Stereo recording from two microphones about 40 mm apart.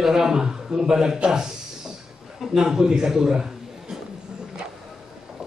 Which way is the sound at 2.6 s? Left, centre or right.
Centre.